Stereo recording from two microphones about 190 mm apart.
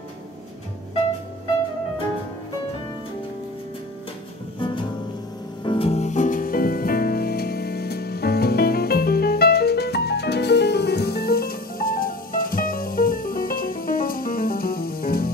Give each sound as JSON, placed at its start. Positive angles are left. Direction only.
{"t": 5.6, "sound": "music", "side_deg": 25}